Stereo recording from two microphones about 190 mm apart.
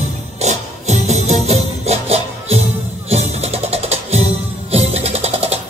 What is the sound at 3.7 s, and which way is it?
Music, 35° right (ahead or behind).